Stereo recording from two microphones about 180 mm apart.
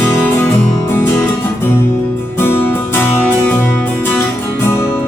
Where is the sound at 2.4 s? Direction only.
10° left (ahead or behind).